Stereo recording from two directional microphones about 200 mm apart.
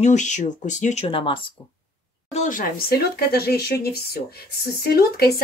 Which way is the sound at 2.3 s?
40° left (ahead or behind).